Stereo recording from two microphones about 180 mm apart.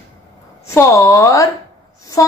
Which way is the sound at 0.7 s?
15° left (ahead or behind).